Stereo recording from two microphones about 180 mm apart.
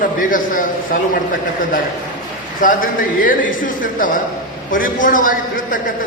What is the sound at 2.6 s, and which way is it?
A man's voice, 50° left (ahead or behind).